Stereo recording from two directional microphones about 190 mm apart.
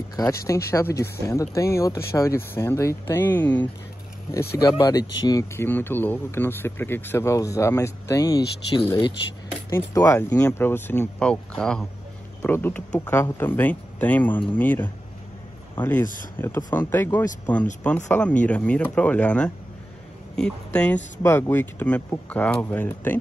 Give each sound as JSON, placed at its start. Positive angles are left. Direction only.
{"t": 0.1, "sound": "speech", "side_deg": 15}
{"t": 4.6, "sound": "speech", "side_deg": 20}